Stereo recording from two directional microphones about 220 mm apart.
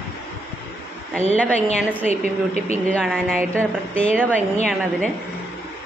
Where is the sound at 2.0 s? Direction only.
30° left (ahead or behind).